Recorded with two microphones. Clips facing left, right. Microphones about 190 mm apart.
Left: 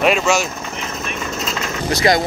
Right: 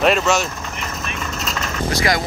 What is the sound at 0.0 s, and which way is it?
Speech, centre (ahead or behind).